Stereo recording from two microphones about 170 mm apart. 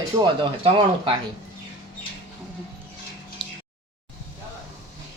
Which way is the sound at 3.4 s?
30° right (ahead or behind).